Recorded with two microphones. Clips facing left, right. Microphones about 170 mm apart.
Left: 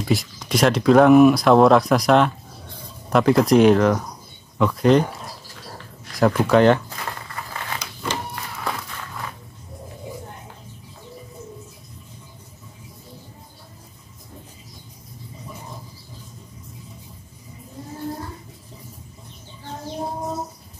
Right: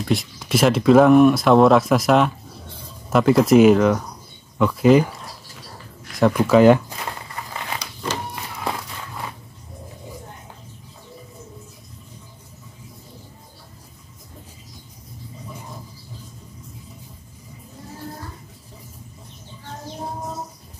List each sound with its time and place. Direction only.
0.0 s speech: centre (ahead or behind)
6.3 s speech: 5° right (ahead or behind)
8.4 s a sound: 20° right (ahead or behind)